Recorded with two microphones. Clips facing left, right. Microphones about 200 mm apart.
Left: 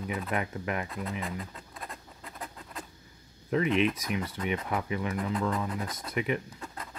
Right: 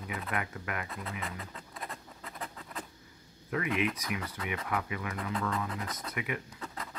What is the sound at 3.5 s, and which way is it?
Speech, 25° left (ahead or behind).